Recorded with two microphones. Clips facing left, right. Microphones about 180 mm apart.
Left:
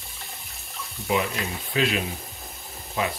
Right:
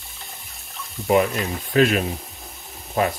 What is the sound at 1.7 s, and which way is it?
Speech, 50° right (ahead or behind).